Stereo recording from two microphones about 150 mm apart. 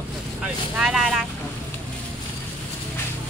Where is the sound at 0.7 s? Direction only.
Centre (ahead or behind).